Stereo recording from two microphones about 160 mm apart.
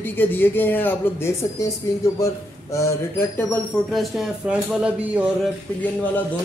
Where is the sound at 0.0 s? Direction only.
10° left (ahead or behind).